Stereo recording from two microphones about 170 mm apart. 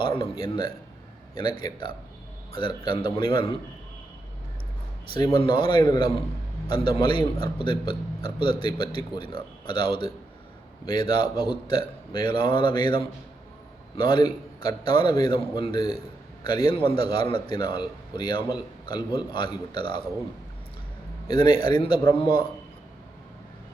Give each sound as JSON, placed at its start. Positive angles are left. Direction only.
{"t": 0.0, "sound": "a man's voice", "side_deg": 30}
{"t": 5.1, "sound": "a man's voice", "side_deg": 30}
{"t": 21.2, "sound": "a man's voice", "side_deg": 30}